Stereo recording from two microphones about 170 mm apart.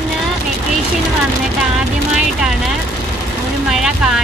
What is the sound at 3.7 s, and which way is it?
Speech, 5° right (ahead or behind).